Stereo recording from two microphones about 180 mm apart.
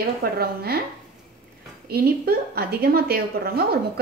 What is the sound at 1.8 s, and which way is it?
A woman's voice, 60° right (ahead or behind).